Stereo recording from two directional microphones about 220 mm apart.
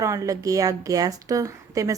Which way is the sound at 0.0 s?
15° right (ahead or behind).